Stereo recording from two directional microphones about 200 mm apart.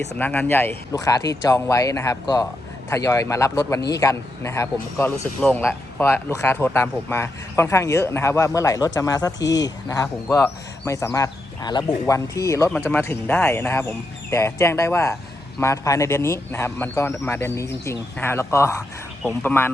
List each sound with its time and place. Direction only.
0.2 s speech: 10° left (ahead or behind)